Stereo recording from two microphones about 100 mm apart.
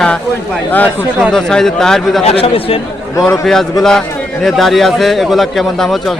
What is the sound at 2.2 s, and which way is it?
Speech, 75° left (ahead or behind).